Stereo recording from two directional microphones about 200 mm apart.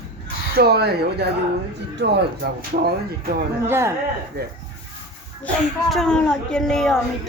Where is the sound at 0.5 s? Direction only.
50° right (ahead or behind).